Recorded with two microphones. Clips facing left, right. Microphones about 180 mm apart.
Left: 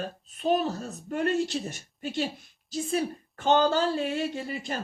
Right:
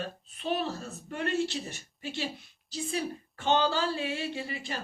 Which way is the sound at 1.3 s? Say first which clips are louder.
Even; centre (ahead or behind).